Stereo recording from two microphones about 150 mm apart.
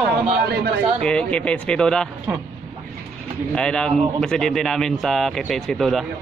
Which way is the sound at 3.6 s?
5° left (ahead or behind).